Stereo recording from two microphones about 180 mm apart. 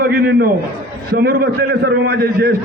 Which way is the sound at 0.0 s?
55° right (ahead or behind).